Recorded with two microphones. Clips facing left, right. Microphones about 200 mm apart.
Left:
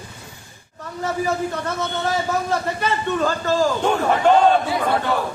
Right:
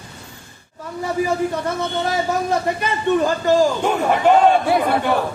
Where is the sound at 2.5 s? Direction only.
15° right (ahead or behind).